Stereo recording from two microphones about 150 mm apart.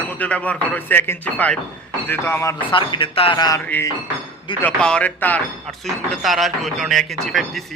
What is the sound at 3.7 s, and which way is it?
Speech, 15° left (ahead or behind).